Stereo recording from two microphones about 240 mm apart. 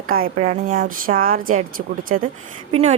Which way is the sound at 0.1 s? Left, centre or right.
Right.